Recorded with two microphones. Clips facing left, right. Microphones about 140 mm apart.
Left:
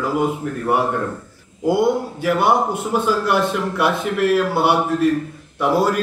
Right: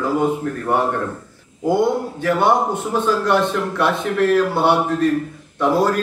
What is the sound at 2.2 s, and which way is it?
A man's voice, 10° left (ahead or behind).